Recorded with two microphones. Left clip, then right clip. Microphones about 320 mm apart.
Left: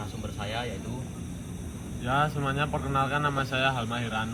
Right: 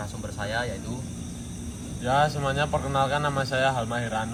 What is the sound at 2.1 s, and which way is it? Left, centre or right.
Speech, right.